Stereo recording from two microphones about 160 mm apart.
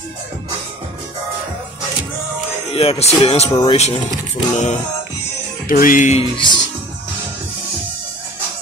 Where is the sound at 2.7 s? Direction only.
35° left (ahead or behind).